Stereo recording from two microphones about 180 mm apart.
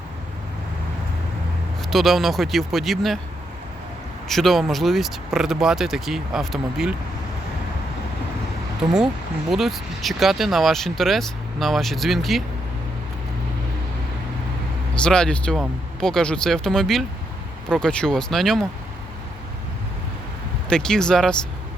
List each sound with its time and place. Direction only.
1.9 s speech: centre (ahead or behind)
4.3 s speech: centre (ahead or behind)
8.8 s speech: 5° right (ahead or behind)
14.9 s speech: 5° left (ahead or behind)
20.7 s speech: 5° left (ahead or behind)